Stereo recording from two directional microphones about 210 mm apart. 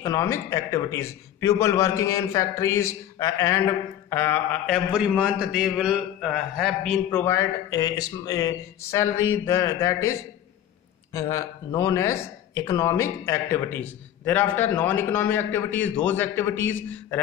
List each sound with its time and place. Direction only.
0.0 s a man's voice: 15° left (ahead or behind)
11.1 s a man's voice: 15° left (ahead or behind)